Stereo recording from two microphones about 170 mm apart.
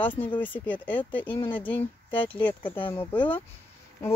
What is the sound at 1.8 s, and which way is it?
Speech, 30° left (ahead or behind).